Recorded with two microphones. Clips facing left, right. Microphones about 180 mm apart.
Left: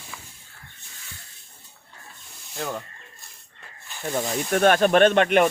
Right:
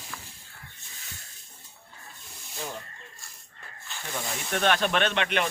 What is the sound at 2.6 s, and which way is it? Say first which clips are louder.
Rub: left 7 dB; 75° left (ahead or behind).